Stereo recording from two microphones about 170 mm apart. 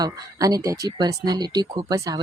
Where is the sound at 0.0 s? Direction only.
20° right (ahead or behind).